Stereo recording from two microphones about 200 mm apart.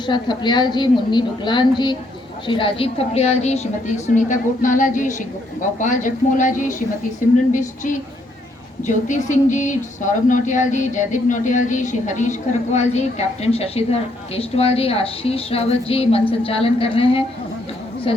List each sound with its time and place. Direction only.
0.0 s a woman's voice: 20° left (ahead or behind)